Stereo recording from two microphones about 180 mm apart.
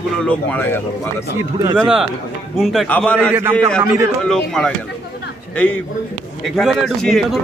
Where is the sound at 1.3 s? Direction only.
20° right (ahead or behind).